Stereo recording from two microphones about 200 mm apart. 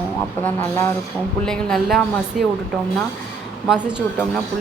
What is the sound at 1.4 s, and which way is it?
A woman's voice, 5° left (ahead or behind).